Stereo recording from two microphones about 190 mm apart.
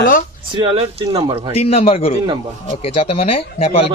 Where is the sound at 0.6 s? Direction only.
25° right (ahead or behind).